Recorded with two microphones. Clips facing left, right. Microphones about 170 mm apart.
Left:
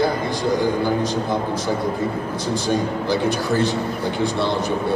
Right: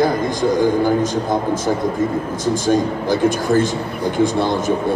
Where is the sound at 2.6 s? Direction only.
45° right (ahead or behind).